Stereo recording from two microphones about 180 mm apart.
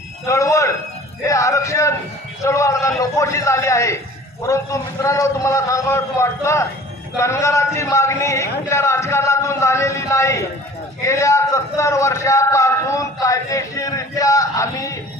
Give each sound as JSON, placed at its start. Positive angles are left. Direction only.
{"t": 0.3, "sound": "a man's voice", "side_deg": 15}